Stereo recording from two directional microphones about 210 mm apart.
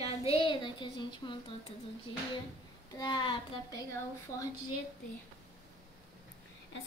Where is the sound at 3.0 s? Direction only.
20° left (ahead or behind).